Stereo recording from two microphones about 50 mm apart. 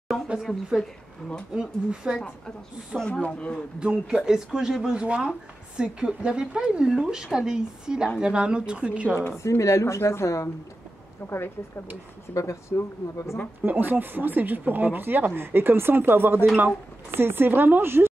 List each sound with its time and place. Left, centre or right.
1.5 s speech: centre
3.0 s speech: left
3.8 s speech: centre
5.0 s speech: right
9.4 s speech: left
11.2 s a woman's voice: left
12.4 s speech: left
13.7 s speech: right